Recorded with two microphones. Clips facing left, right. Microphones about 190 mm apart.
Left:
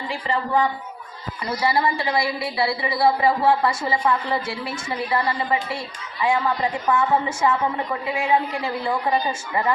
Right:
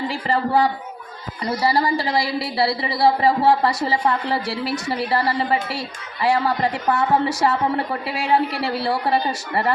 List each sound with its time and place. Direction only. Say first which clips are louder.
0.1 s a woman's voice: even; 35° right (ahead or behind)